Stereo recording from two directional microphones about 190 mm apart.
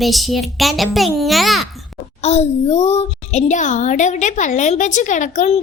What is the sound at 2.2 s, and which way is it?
A woman's voice, 35° left (ahead or behind).